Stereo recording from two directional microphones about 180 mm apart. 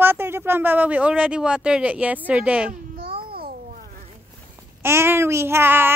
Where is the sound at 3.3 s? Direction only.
55° right (ahead or behind).